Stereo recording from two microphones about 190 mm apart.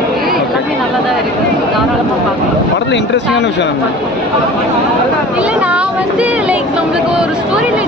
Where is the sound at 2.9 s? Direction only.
65° left (ahead or behind).